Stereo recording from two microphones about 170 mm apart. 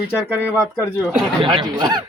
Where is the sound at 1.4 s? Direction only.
25° right (ahead or behind).